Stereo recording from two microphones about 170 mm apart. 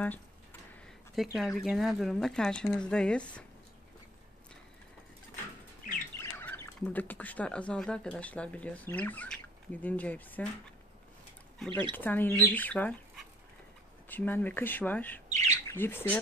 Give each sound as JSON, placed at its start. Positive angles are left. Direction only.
{"t": 0.0, "sound": "a sound", "side_deg": 10}
{"t": 1.1, "sound": "speech", "side_deg": 0}
{"t": 6.1, "sound": "speech", "side_deg": 15}
{"t": 11.9, "sound": "speech", "side_deg": 10}
{"t": 14.0, "sound": "speech", "side_deg": 10}
{"t": 15.2, "sound": "bird", "side_deg": -40}
{"t": 15.6, "sound": "speech", "side_deg": 15}